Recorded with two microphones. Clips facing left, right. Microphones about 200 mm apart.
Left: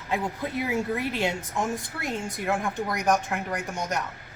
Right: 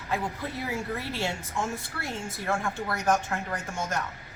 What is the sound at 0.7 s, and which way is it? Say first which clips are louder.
Speech: left 5 dB; 15° left (ahead or behind).